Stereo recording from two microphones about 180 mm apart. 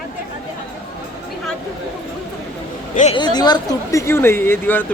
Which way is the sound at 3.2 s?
25° left (ahead or behind).